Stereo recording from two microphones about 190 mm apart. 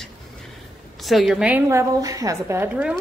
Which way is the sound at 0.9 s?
Centre (ahead or behind).